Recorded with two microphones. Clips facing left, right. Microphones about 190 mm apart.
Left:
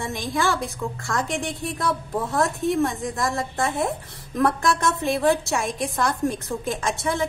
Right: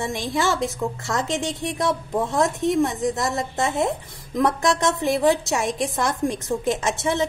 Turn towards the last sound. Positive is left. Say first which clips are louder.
# right 2 dB
turn(degrees=-20)  # may be behind; listen again after turning